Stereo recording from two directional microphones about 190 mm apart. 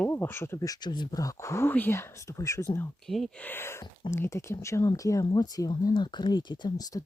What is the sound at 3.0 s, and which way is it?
Speech, centre (ahead or behind).